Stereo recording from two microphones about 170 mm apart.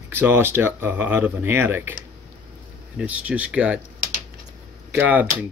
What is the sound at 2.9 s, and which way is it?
Speech, 10° right (ahead or behind).